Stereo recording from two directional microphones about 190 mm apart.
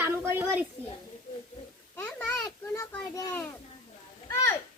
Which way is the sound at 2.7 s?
20° left (ahead or behind).